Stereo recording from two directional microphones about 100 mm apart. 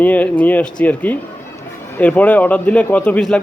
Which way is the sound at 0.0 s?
15° left (ahead or behind).